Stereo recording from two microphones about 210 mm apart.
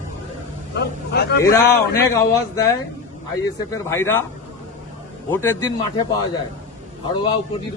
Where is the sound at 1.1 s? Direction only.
50° left (ahead or behind).